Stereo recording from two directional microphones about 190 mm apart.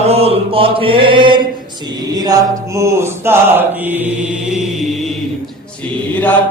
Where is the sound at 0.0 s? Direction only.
30° right (ahead or behind); by 4.9 s centre (ahead or behind).